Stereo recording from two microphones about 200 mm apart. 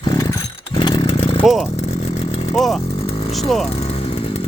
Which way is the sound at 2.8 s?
30° left (ahead or behind).